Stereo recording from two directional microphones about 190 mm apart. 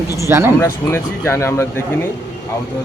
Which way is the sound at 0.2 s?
15° right (ahead or behind).